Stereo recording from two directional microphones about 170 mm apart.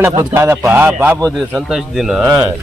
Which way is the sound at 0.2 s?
15° right (ahead or behind).